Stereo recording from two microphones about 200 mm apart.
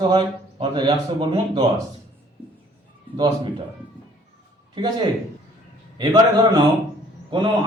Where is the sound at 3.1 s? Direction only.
20° right (ahead or behind).